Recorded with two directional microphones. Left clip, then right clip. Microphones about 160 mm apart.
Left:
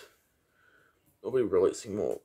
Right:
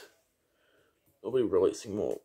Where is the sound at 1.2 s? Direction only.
20° left (ahead or behind).